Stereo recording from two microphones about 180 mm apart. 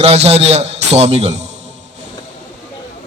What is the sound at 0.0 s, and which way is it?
A man's voice, 35° right (ahead or behind).